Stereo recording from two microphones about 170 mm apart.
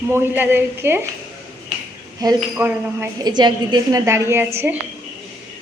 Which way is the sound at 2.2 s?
20° right (ahead or behind).